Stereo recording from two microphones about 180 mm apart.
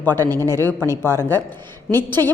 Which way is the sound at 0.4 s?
15° left (ahead or behind).